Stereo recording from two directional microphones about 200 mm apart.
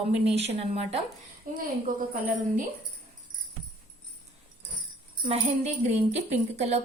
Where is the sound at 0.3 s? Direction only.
30° right (ahead or behind).